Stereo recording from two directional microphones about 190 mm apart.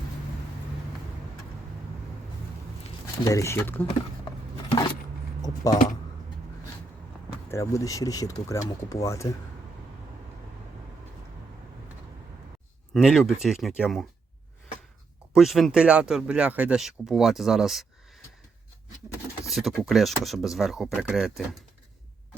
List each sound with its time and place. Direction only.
3.2 s speech: 15° left (ahead or behind)
5.4 s speech: 20° left (ahead or behind)
7.5 s speech: 15° left (ahead or behind)
12.9 s speech: centre (ahead or behind)
15.4 s speech: centre (ahead or behind)
19.5 s speech: centre (ahead or behind)